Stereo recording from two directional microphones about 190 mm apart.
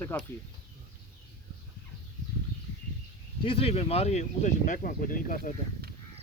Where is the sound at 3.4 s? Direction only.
30° left (ahead or behind).